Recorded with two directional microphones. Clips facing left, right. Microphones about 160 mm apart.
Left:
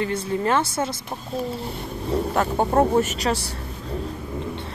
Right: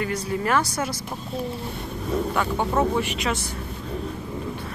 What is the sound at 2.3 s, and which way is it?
Speech, 40° left (ahead or behind).